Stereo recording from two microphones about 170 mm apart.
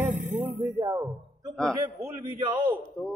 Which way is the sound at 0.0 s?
45° right (ahead or behind).